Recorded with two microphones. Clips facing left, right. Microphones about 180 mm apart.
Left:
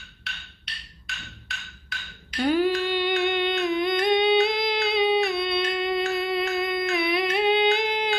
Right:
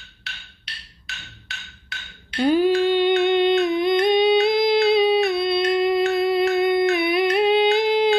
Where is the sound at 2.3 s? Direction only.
20° right (ahead or behind).